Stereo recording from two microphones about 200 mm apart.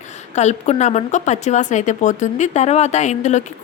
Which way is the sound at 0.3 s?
35° left (ahead or behind).